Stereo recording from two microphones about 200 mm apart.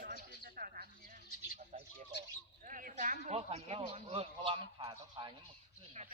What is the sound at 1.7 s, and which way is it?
Bird, 35° right (ahead or behind).